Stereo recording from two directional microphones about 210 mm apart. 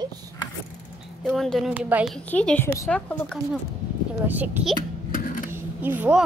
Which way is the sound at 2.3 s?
5° left (ahead or behind).